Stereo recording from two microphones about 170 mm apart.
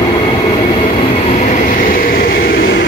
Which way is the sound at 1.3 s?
45° left (ahead or behind).